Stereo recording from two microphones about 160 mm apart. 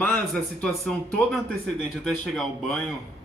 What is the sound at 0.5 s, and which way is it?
A man's voice, 5° left (ahead or behind).